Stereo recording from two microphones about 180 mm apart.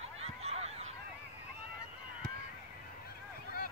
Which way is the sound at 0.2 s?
35° right (ahead or behind).